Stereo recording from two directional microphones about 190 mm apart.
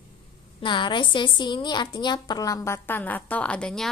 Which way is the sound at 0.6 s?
25° left (ahead or behind).